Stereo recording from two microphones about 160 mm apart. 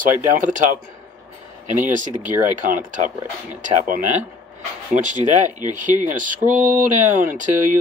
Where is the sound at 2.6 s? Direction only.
55° right (ahead or behind).